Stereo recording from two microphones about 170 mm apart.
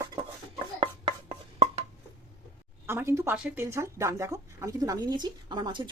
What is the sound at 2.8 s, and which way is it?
Speech, 15° right (ahead or behind).